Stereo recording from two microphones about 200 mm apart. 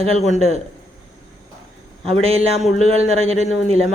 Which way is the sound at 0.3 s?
35° left (ahead or behind).